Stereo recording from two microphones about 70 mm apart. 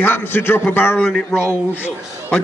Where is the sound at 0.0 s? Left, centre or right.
Left.